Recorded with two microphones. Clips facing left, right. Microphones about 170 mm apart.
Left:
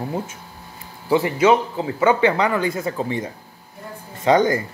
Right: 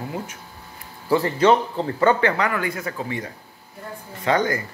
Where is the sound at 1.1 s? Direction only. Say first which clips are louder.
Left 1 dB; 10° left (ahead or behind).